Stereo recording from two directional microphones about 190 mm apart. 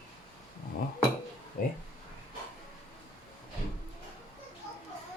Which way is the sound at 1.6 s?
50° left (ahead or behind).